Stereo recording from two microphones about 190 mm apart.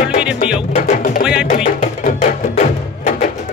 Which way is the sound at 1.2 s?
5° right (ahead or behind).